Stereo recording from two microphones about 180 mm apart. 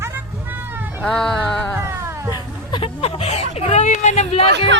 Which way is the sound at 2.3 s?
25° left (ahead or behind).